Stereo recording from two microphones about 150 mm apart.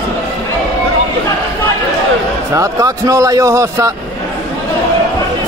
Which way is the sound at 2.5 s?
20° right (ahead or behind).